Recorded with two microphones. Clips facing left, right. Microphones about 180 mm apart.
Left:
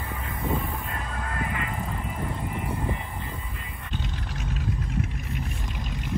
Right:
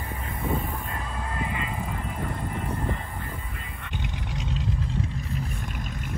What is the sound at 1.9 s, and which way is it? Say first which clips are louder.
Vehicle: even; centre (ahead or behind).